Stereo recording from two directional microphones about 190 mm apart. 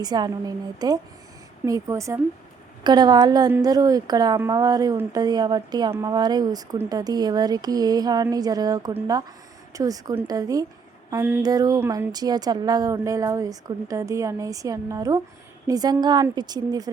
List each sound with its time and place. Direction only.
0.0 s a woman's voice: 20° right (ahead or behind)